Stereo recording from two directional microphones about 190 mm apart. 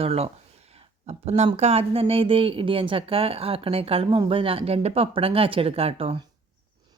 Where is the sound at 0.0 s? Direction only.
30° right (ahead or behind).